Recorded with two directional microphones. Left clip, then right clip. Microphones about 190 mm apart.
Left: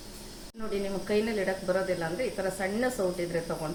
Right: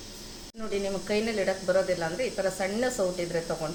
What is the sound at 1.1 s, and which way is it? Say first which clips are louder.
Speech: even; 5° right (ahead or behind).